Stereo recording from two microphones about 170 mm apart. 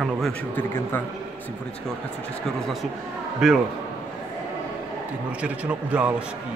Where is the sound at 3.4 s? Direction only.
5° right (ahead or behind).